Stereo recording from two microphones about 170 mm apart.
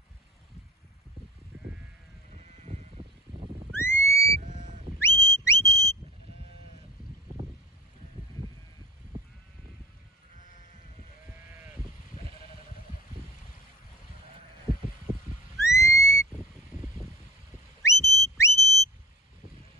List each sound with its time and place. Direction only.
3.7 s whistle: 15° left (ahead or behind)
4.4 s sheep: 45° right (ahead or behind)
5.0 s whistle: 15° left (ahead or behind)
11.2 s sheep: 10° right (ahead or behind)
15.5 s whistle: 15° left (ahead or behind)
17.9 s whistle: centre (ahead or behind)
18.4 s a sound: 15° left (ahead or behind)